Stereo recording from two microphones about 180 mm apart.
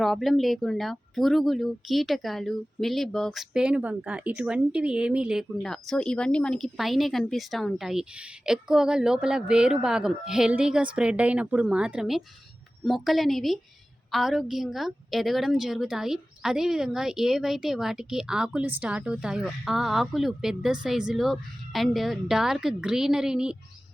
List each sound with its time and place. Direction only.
0.0 s speech: centre (ahead or behind)